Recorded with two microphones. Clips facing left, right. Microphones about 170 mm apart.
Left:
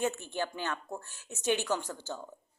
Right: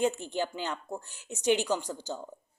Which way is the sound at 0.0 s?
15° right (ahead or behind).